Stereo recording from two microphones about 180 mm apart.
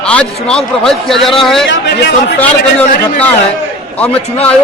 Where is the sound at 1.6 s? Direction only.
80° left.